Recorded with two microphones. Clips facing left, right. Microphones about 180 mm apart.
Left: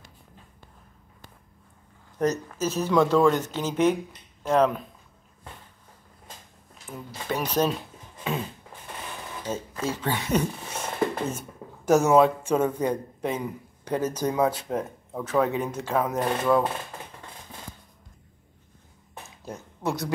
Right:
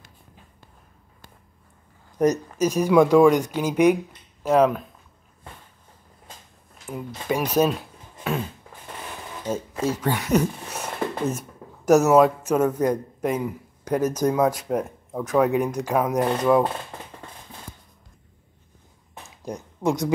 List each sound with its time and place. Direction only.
2.2 s speech: 20° right (ahead or behind)
6.9 s speech: 10° right (ahead or behind)
9.8 s speech: 10° right (ahead or behind)
13.8 s speech: 10° right (ahead or behind)
19.4 s speech: 15° right (ahead or behind)